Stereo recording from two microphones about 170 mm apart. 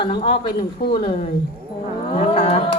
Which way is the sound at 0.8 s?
65° left (ahead or behind).